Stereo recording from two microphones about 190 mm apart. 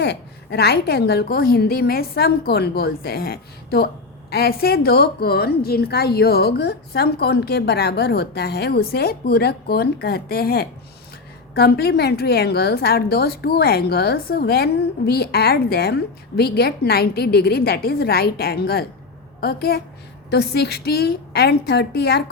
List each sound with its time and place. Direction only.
0.0 s a woman's voice: 60° left (ahead or behind)